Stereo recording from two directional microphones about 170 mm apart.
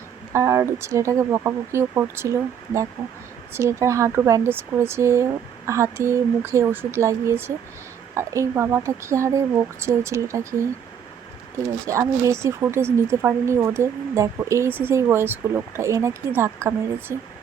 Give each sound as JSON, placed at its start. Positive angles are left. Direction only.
{"t": 0.3, "sound": "speech", "side_deg": -15}
{"t": 11.9, "sound": "speech", "side_deg": -15}